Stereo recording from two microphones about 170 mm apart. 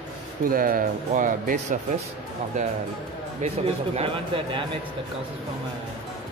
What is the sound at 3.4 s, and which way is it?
Speech, 40° right (ahead or behind).